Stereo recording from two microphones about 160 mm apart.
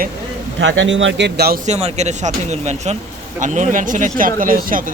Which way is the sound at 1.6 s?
45° right (ahead or behind).